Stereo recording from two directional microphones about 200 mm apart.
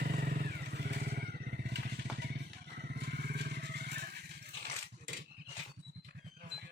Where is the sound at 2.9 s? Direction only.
55° right (ahead or behind).